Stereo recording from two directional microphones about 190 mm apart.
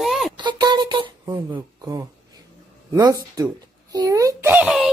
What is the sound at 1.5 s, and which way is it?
A child's voice, 20° right (ahead or behind).